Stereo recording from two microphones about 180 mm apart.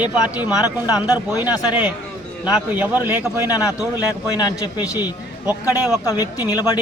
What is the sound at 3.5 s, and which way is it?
Speech, 20° left (ahead or behind).